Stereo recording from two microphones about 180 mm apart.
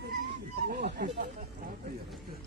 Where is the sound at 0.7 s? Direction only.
65° right (ahead or behind).